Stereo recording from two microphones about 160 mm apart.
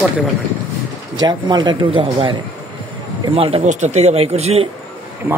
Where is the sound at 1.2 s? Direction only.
25° right (ahead or behind).